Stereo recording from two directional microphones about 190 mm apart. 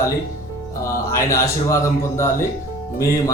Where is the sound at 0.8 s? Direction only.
15° left (ahead or behind).